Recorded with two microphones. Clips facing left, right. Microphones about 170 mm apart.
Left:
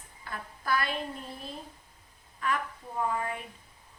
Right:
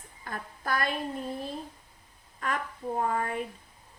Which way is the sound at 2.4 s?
45° right (ahead or behind).